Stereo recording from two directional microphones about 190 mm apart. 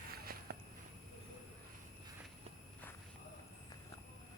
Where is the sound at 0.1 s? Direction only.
55° right (ahead or behind).